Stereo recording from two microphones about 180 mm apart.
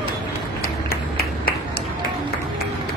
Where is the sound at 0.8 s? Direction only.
60° left (ahead or behind).